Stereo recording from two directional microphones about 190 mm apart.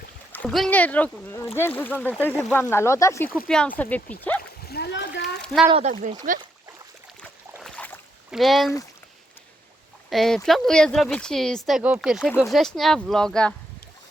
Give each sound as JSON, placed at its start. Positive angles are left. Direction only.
{"t": 0.3, "sound": "speech", "side_deg": 5}
{"t": 4.6, "sound": "splash", "side_deg": 55}
{"t": 5.4, "sound": "speech", "side_deg": 0}
{"t": 5.7, "sound": "speech", "side_deg": -30}
{"t": 6.3, "sound": "speech", "side_deg": -45}
{"t": 7.6, "sound": "boat", "side_deg": 5}
{"t": 8.3, "sound": "speech", "side_deg": 0}
{"t": 10.1, "sound": "speech", "side_deg": 0}